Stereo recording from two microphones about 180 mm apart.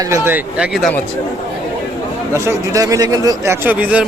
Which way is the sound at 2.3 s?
15° right (ahead or behind).